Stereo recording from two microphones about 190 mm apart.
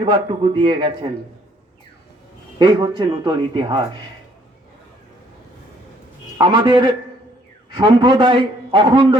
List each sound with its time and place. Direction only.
0.0 s a man's voice: 25° right (ahead or behind)
2.6 s a man's voice: 25° right (ahead or behind)
6.4 s a man's voice: 25° right (ahead or behind)